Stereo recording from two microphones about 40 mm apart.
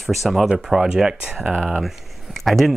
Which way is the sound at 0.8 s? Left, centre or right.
Centre.